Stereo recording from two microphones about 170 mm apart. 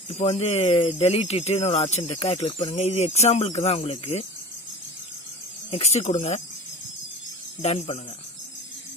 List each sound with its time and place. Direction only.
0.1 s speech: 40° left (ahead or behind)
5.7 s speech: 40° left (ahead or behind)
7.6 s speech: 40° left (ahead or behind)